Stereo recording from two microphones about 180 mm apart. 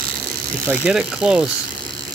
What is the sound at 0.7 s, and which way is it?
Speech, 5° right (ahead or behind).